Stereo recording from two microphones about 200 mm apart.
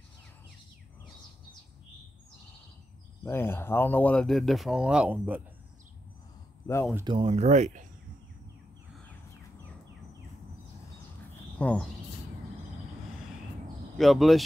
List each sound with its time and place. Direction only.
3.3 s speech: 10° left (ahead or behind); by 5.4 s 10° right (ahead or behind)
7.1 s speech: 25° right (ahead or behind)
11.5 s speech: 5° left (ahead or behind)
13.9 s speech: centre (ahead or behind)